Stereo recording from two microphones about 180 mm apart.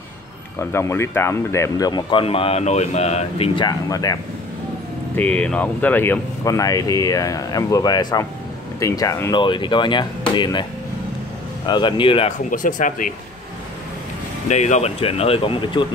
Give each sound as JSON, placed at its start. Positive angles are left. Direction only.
{"t": 0.6, "sound": "speech", "side_deg": 15}
{"t": 5.1, "sound": "speech", "side_deg": 10}
{"t": 12.4, "sound": "speech", "side_deg": 45}
{"t": 14.5, "sound": "speech", "side_deg": 40}